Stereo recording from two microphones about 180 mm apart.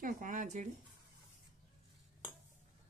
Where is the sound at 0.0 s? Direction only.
45° right (ahead or behind).